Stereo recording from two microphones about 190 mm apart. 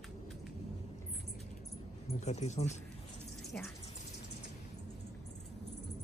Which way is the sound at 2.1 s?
35° left (ahead or behind).